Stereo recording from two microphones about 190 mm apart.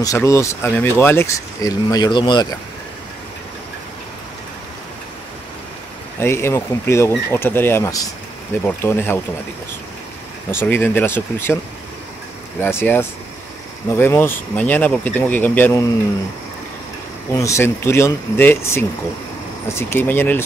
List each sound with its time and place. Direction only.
0.0 s speech: 15° left (ahead or behind)
6.1 s speech: 15° left (ahead or behind)
10.5 s speech: 10° left (ahead or behind)
12.5 s speech: 10° left (ahead or behind)
17.3 s speech: 15° left (ahead or behind)